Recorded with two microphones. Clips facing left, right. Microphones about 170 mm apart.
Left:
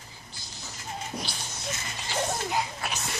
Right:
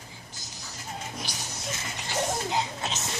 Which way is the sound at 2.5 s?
25° right (ahead or behind).